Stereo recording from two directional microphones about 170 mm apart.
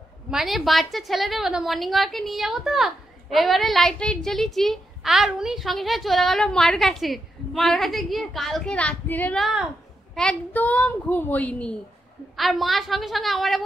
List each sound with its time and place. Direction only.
0.3 s a woman's voice: centre (ahead or behind)